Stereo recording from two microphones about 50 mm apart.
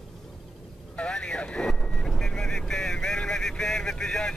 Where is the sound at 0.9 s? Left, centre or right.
Centre.